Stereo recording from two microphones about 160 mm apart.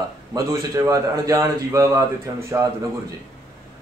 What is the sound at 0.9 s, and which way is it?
A man's voice, 20° right (ahead or behind).